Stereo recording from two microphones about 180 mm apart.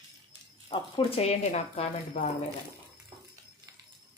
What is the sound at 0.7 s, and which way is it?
Speech, 35° left (ahead or behind).